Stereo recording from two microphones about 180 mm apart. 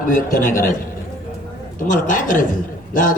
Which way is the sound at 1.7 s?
45° left (ahead or behind).